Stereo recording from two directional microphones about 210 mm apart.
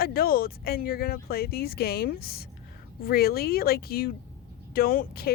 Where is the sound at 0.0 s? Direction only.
45° left (ahead or behind).